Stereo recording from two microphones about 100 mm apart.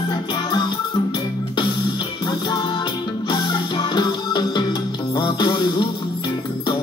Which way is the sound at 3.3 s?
50° left (ahead or behind).